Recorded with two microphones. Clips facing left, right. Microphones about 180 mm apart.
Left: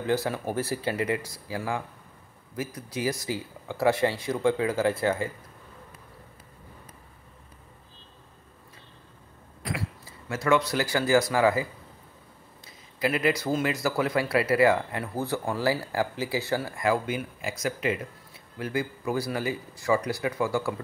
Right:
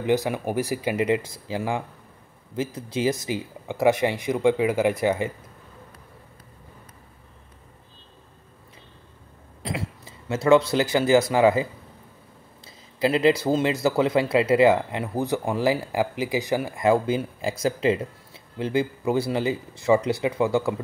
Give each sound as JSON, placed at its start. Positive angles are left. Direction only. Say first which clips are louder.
{"t": 0.0, "sound": "speech", "louder": "right 4 dB", "side_deg": -15}
{"t": 9.6, "sound": "speech", "louder": "right 3 dB", "side_deg": -25}
{"t": 12.6, "sound": "speech", "louder": "right 5 dB", "side_deg": -25}